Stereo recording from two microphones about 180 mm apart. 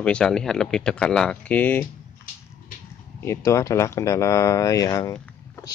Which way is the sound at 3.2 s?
15° left (ahead or behind).